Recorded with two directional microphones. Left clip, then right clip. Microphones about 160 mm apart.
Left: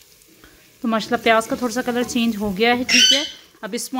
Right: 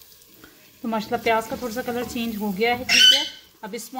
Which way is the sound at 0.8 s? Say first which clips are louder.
Left 5 dB; 45° left (ahead or behind).